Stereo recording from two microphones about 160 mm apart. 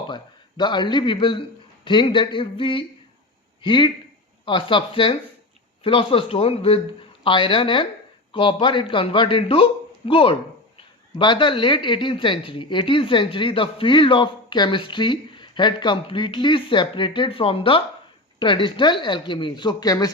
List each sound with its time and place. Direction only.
0.1 s a man's voice: 30° left (ahead or behind)